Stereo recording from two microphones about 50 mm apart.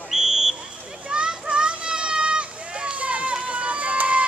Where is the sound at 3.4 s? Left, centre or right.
Right.